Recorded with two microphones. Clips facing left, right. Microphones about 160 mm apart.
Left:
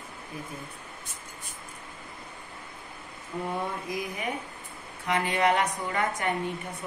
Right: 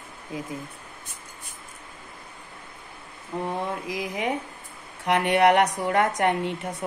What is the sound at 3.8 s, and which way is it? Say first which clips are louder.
Speech: right 4 dB; 90° right.